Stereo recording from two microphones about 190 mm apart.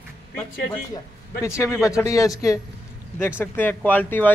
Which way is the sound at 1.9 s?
15° left (ahead or behind).